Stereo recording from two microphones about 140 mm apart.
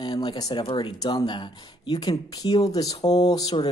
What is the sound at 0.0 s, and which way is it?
Speech, 30° left (ahead or behind).